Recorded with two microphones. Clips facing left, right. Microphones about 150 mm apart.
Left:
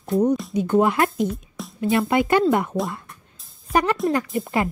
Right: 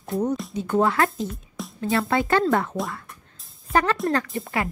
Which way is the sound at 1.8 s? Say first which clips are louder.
Left 3 dB; 20° left (ahead or behind).